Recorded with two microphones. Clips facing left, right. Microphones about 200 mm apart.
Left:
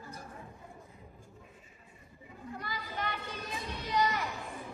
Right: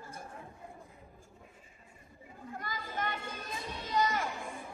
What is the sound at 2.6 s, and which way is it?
Children playing, 45° right (ahead or behind).